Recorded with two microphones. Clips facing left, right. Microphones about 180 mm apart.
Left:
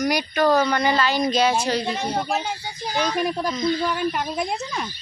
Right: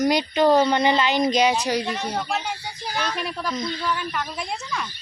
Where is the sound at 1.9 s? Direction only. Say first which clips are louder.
Left 2 dB; 30° left (ahead or behind).